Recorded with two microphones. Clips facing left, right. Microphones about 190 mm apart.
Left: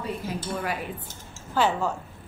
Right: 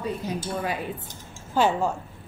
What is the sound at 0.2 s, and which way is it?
Speech, 20° right (ahead or behind).